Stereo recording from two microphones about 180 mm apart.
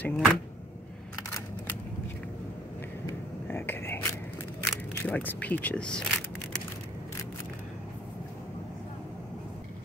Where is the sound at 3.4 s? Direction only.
10° left (ahead or behind).